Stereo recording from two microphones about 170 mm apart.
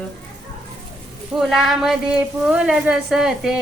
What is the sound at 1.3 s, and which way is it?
Speech, centre (ahead or behind).